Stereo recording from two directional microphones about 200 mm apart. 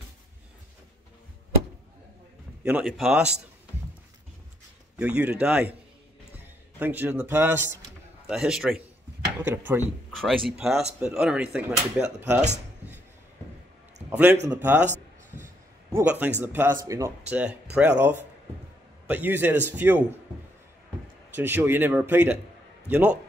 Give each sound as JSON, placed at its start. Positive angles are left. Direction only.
{"t": 2.6, "sound": "speech", "side_deg": -5}
{"t": 4.9, "sound": "speech", "side_deg": -5}
{"t": 6.8, "sound": "speech", "side_deg": -10}
{"t": 12.4, "sound": "dishes", "side_deg": -35}
{"t": 14.1, "sound": "a man's voice", "side_deg": -10}
{"t": 15.9, "sound": "a man's voice", "side_deg": -10}
{"t": 21.4, "sound": "speech", "side_deg": -10}